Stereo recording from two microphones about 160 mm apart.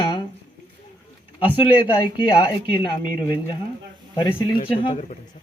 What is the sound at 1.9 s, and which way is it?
Speech, 30° left (ahead or behind).